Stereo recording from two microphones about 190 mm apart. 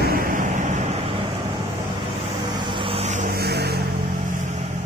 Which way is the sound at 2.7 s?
25° right (ahead or behind).